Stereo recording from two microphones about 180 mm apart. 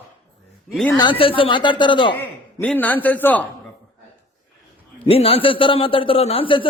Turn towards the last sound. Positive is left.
turn(degrees=30)  # may be behind; listen again after turning